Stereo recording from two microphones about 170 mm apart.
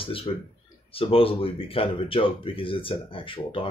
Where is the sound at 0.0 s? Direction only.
30° left (ahead or behind).